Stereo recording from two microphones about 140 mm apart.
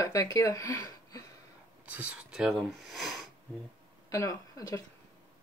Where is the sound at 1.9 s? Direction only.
10° right (ahead or behind).